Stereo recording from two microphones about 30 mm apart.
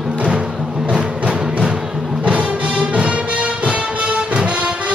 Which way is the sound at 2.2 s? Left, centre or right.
Right.